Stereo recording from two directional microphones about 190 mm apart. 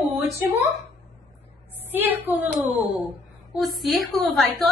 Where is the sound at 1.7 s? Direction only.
10° right (ahead or behind).